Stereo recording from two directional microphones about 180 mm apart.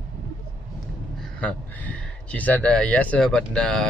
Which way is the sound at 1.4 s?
10° left (ahead or behind).